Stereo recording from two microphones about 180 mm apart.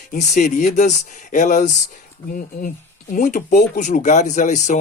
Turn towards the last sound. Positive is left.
turn(degrees=40)  # may be behind; listen again after turning